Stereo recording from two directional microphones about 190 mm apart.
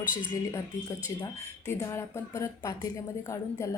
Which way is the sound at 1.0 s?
15° left (ahead or behind).